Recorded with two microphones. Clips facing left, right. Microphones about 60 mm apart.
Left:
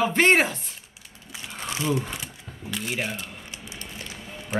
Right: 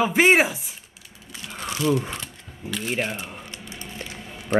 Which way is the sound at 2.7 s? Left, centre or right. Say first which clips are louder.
Right 3 dB; centre.